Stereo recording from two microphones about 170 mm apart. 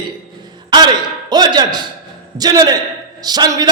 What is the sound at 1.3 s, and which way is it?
A man's voice, 25° right (ahead or behind).